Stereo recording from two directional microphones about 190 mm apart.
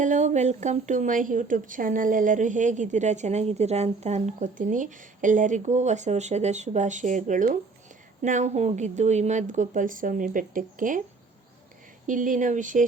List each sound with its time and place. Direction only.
0.0 s a woman's voice: 40° right (ahead or behind)
12.0 s speech: 45° right (ahead or behind)